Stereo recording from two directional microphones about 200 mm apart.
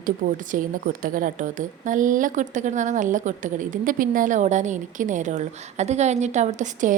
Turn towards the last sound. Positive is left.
turn(degrees=-35)  # may be behind; listen again after turning